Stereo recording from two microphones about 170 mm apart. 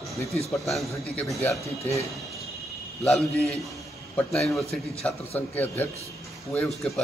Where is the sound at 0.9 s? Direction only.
20° left (ahead or behind).